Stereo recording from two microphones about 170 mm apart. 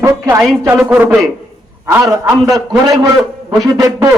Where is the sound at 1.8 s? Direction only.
20° right (ahead or behind).